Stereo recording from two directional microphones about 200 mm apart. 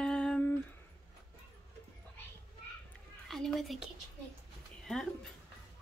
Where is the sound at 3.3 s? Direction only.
Centre (ahead or behind).